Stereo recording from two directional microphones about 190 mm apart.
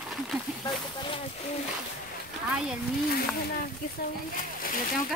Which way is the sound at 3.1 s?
50° left (ahead or behind).